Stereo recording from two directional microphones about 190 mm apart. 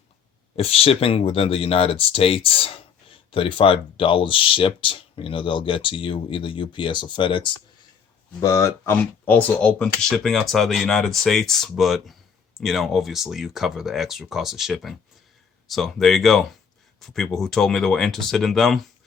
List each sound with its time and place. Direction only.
0.5 s speech: 30° left (ahead or behind)
8.4 s speech: 15° left (ahead or behind)